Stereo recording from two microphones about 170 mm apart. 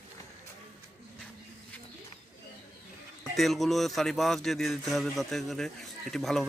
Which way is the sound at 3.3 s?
Centre (ahead or behind).